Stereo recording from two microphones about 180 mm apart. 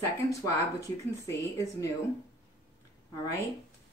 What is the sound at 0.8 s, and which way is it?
Speech, 15° left (ahead or behind).